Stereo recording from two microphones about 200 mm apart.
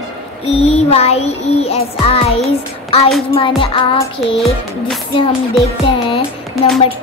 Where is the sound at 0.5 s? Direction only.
30° left (ahead or behind).